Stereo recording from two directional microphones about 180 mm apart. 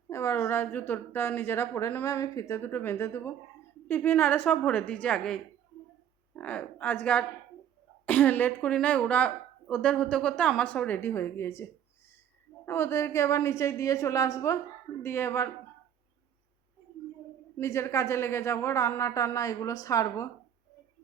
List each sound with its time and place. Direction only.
0.1 s speech: 15° left (ahead or behind)
17.6 s speech: 15° left (ahead or behind)